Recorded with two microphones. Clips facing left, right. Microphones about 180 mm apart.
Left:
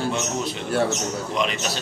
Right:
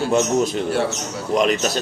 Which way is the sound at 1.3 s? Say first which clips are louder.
Right 9 dB; 45° right (ahead or behind).